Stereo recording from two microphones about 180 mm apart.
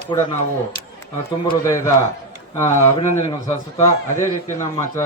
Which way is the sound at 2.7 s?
40° left (ahead or behind).